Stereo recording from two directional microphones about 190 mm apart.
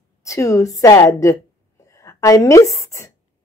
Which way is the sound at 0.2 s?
15° left (ahead or behind).